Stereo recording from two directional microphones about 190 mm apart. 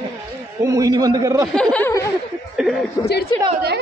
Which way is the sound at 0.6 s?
15° right (ahead or behind).